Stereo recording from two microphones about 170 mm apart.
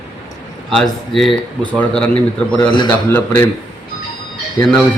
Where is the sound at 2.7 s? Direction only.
25° left (ahead or behind).